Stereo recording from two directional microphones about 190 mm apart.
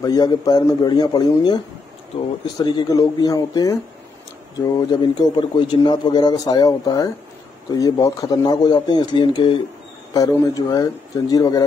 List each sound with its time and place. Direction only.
0.0 s a man's voice: 20° left (ahead or behind)
2.6 s a man's voice: 20° left (ahead or behind)